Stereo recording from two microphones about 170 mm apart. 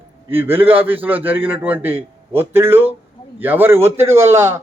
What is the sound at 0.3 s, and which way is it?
A man's voice, 10° right (ahead or behind).